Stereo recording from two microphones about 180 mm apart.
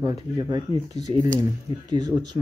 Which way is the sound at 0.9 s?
40° left (ahead or behind).